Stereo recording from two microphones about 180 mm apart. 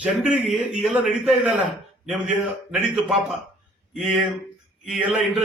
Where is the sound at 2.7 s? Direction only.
Centre (ahead or behind).